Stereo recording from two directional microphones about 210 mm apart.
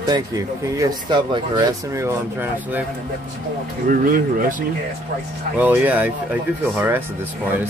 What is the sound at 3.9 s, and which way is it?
Speech, 40° right (ahead or behind).